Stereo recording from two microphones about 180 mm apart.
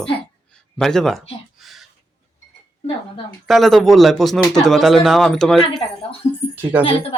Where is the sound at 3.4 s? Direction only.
Centre (ahead or behind).